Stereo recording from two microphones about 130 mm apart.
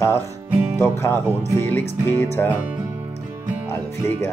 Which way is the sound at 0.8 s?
15° left (ahead or behind).